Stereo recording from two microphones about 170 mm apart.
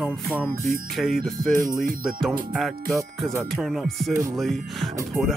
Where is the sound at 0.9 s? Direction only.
Centre (ahead or behind).